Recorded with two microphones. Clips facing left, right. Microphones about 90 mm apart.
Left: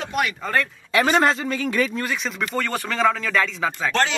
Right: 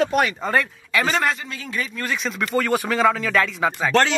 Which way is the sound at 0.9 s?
25° left (ahead or behind).